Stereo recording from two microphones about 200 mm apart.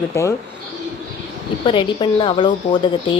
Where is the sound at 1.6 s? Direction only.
25° left (ahead or behind).